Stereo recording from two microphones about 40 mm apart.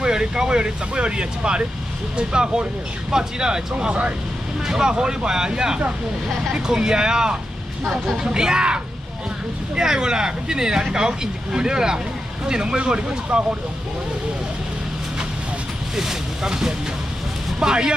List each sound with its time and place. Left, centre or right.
0.0 s speech: centre
3.8 s speech: right
4.6 s speech: centre
16.0 s speech: centre